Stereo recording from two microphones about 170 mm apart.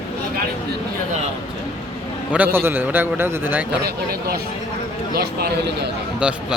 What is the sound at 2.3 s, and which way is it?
Speech, 10° right (ahead or behind).